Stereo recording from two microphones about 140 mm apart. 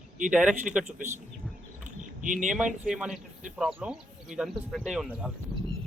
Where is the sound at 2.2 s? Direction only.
65° right (ahead or behind).